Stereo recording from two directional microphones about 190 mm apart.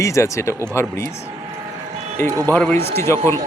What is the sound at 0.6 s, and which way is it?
Speech, 5° left (ahead or behind).